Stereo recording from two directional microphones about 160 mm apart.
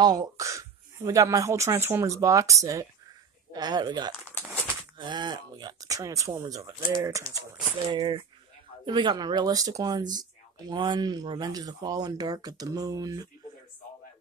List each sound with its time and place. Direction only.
0.0 s speech: 25° right (ahead or behind)